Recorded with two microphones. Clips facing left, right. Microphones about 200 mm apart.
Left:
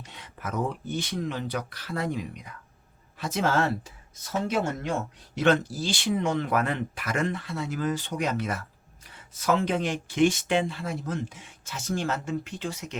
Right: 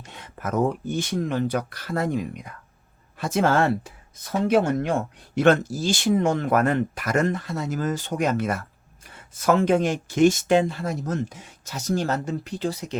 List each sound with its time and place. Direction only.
0.0 s speech: 45° right (ahead or behind)